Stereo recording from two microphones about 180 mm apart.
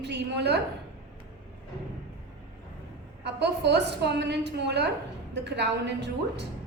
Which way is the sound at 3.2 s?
70° right (ahead or behind).